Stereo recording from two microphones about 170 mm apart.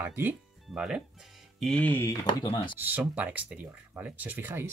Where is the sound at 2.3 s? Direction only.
30° left (ahead or behind).